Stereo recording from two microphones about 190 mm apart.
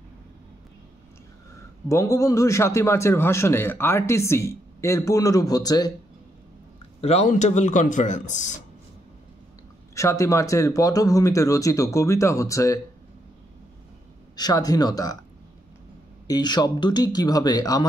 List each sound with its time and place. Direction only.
1.9 s a man's voice: 15° left (ahead or behind)
7.0 s speech: 35° left (ahead or behind)
9.9 s a man's voice: 15° left (ahead or behind)
14.3 s speech: 20° left (ahead or behind)
16.3 s speech: 20° left (ahead or behind)